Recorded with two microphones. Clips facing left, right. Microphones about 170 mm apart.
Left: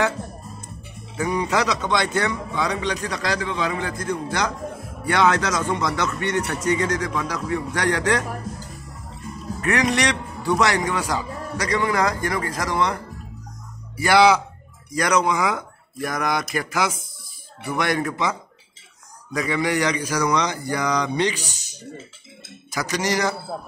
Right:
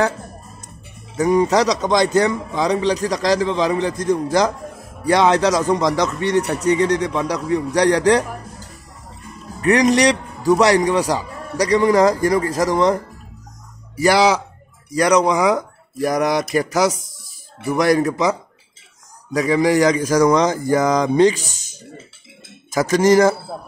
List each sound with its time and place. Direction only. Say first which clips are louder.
1.1 s a man's voice: right 7 dB; 40° right (ahead or behind)
9.6 s a man's voice: right 7 dB; 35° right (ahead or behind)
13.9 s a man's voice: right 1 dB; 40° right (ahead or behind)
19.3 s speech: right 7 dB; 40° right (ahead or behind)
22.8 s speech: right 10 dB; 50° right (ahead or behind)